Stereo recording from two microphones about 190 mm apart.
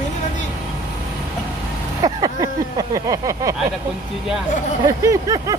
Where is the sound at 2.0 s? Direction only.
20° right (ahead or behind).